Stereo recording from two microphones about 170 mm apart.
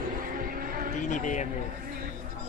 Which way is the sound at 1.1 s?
45° left (ahead or behind).